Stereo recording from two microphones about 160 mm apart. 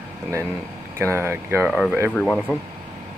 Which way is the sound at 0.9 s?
15° right (ahead or behind).